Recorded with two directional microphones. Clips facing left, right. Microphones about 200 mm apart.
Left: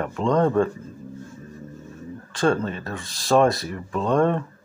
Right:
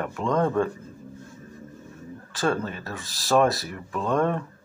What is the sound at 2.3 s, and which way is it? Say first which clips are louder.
Speech: left 4 dB; centre (ahead or behind).